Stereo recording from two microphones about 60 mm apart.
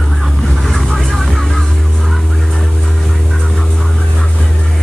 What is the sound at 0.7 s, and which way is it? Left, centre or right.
Vehicle, centre.